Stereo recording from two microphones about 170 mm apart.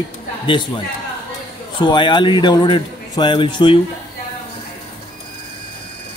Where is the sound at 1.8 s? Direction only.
25° left (ahead or behind).